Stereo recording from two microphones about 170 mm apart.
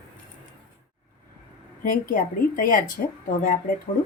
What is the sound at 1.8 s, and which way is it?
Speech, 55° left (ahead or behind).